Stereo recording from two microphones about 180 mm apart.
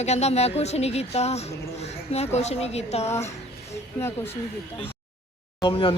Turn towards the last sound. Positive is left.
turn(degrees=30)  # may be behind; listen again after turning